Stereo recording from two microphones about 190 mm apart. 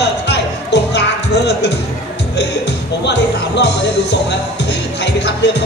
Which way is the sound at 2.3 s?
65° left (ahead or behind).